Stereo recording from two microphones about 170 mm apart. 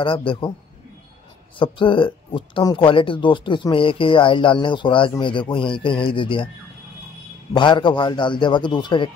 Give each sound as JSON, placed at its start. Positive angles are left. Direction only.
{"t": 0.0, "sound": "a man's voice", "side_deg": 30}
{"t": 1.6, "sound": "speech", "side_deg": 30}
{"t": 7.5, "sound": "speech", "side_deg": 30}